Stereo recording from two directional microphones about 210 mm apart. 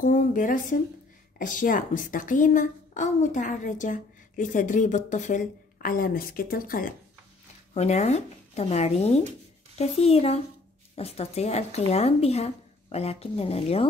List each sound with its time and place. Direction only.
0.0 s a woman's voice: 40° left (ahead or behind)
7.7 s a woman's voice: 30° left (ahead or behind)